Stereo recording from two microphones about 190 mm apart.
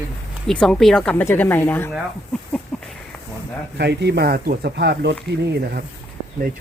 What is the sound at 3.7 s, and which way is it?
Speech, 60° right (ahead or behind).